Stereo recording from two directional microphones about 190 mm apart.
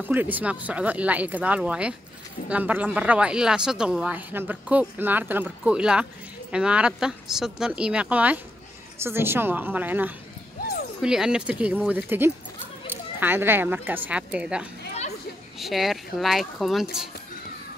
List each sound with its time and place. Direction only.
0.0 s a woman's voice: 10° right (ahead or behind)